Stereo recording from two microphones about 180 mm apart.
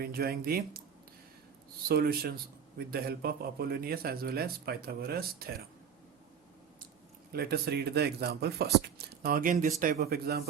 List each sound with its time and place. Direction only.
0.0 s a man's voice: 60° right (ahead or behind)
1.9 s a man's voice: 55° right (ahead or behind)
7.3 s a man's voice: 60° right (ahead or behind)